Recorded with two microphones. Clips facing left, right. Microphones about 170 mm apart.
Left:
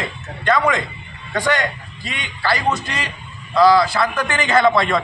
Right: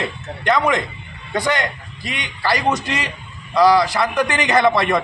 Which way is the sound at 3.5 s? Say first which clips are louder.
Left 1 dB; 15° right (ahead or behind).